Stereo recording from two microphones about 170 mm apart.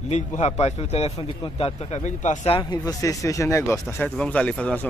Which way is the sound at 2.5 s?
20° left (ahead or behind).